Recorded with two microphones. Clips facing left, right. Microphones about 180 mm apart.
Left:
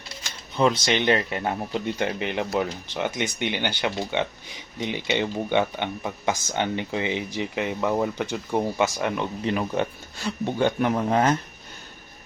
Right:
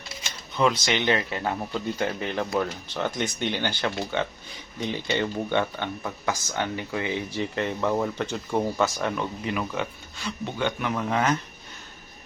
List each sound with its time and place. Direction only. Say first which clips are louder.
0.6 s speech: left 2 dB; 25° left (ahead or behind)
9.6 s speech: left 4 dB; 35° left (ahead or behind)